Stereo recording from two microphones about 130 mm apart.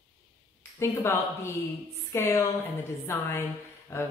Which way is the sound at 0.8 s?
20° left (ahead or behind).